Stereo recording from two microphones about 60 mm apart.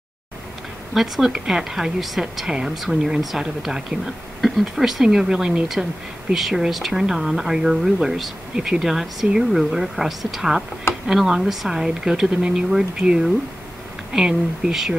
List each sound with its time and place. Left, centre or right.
0.9 s speech: centre